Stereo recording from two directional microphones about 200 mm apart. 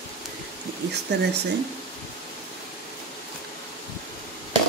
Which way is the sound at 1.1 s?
60° right (ahead or behind).